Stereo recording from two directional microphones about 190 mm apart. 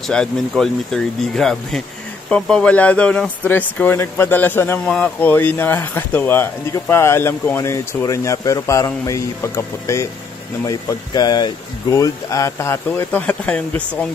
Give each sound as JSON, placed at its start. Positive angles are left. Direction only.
{"t": 0.1, "sound": "speech", "side_deg": 5}